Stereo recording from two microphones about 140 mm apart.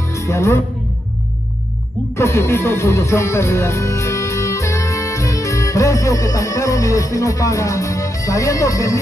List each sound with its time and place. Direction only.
0.0 s music: 20° left (ahead or behind)
2.1 s speech: 20° left (ahead or behind)